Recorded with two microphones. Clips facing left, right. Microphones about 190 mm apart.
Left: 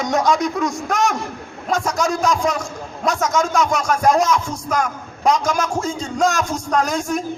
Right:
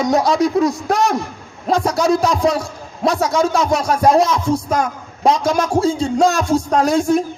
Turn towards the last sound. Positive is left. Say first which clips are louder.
# right 5 dB
turn(degrees=-35)  # may be behind; listen again after turning